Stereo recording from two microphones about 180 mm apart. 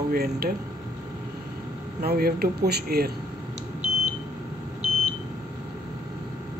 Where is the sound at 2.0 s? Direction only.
60° right (ahead or behind).